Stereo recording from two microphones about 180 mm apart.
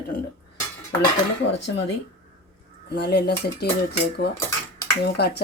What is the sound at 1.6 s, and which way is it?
Speech, 75° left (ahead or behind).